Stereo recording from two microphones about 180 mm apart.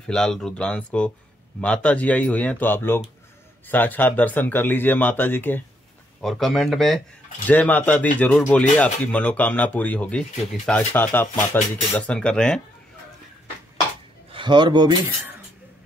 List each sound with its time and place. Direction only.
0.0 s speech: 5° left (ahead or behind)
14.3 s speech: 25° right (ahead or behind)